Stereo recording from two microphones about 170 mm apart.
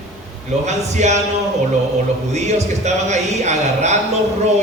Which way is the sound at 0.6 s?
45° right (ahead or behind).